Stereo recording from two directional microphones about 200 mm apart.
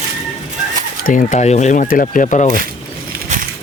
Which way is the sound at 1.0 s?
40° left (ahead or behind).